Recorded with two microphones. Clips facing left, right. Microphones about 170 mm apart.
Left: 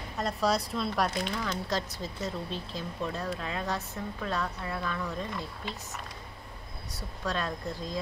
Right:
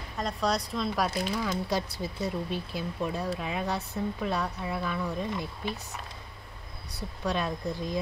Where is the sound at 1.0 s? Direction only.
10° right (ahead or behind).